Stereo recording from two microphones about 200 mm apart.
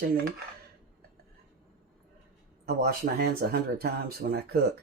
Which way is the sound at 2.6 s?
50° right (ahead or behind).